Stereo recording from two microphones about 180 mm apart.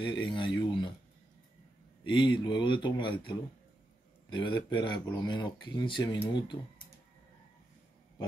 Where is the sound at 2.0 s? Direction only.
25° left (ahead or behind).